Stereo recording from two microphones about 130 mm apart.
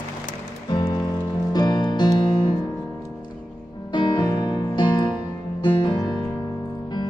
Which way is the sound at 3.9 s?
35° left (ahead or behind).